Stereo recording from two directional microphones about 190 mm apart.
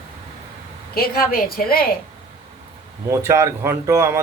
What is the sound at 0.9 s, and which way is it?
Speech, 50° left (ahead or behind).